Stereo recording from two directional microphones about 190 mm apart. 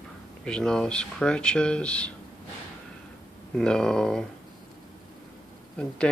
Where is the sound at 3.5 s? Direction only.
5° left (ahead or behind).